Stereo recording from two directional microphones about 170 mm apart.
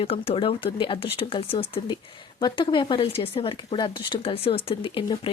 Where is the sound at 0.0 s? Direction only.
35° left (ahead or behind).